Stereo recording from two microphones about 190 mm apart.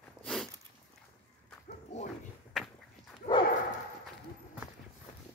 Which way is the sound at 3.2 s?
30° left (ahead or behind).